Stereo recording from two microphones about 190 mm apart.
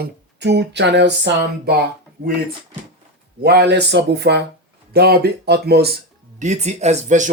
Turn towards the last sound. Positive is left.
turn(degrees=-40)  # may be behind; listen again after turning